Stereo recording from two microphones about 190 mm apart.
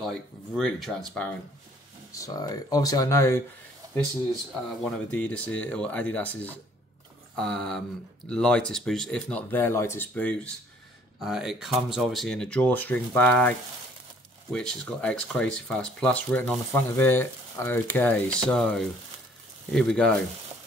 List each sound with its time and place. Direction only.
0.6 s speech: centre (ahead or behind)
2.1 s speech: 20° left (ahead or behind)
4.8 s speech: 5° left (ahead or behind)